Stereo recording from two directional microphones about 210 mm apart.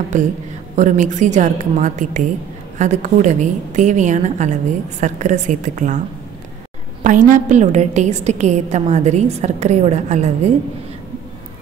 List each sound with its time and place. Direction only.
0.1 s a woman's voice: 35° right (ahead or behind)
7.0 s a woman's voice: 40° right (ahead or behind)